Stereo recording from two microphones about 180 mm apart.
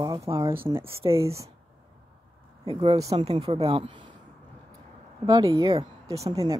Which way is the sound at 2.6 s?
25° right (ahead or behind).